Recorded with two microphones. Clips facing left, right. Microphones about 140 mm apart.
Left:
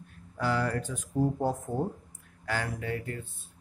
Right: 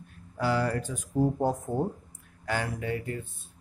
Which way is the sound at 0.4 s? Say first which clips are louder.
Right 2 dB; 10° right (ahead or behind).